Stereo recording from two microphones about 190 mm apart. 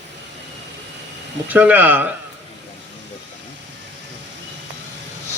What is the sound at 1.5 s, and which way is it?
Speech, 10° right (ahead or behind).